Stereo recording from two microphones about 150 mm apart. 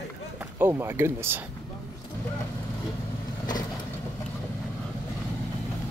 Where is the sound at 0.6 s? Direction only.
15° right (ahead or behind).